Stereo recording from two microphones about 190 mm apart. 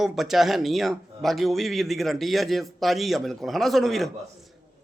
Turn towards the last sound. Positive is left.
turn(degrees=0)  # may be behind; listen again after turning